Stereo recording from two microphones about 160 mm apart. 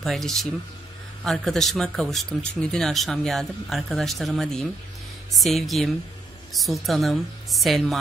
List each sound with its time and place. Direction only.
0.0 s speech: centre (ahead or behind)